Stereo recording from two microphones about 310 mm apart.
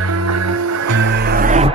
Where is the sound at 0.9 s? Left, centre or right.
Right.